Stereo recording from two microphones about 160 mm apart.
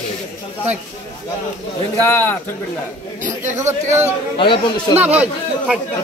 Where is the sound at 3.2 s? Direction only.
50° right (ahead or behind).